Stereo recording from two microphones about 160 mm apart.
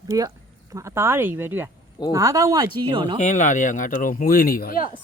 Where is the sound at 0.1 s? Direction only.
20° right (ahead or behind).